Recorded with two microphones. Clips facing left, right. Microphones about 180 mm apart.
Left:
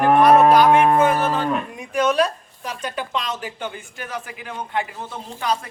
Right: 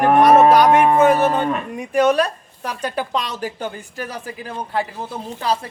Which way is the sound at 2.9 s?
35° right (ahead or behind).